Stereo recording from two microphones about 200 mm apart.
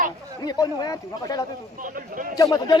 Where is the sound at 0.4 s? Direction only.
20° left (ahead or behind).